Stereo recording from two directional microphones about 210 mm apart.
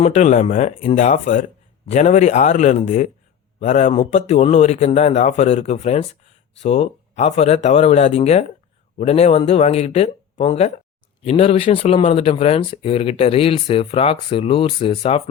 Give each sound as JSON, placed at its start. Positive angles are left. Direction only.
{"t": 0.0, "sound": "speech", "side_deg": 35}